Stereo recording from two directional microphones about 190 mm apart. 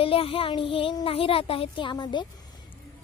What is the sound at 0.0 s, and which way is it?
Speech, 30° left (ahead or behind).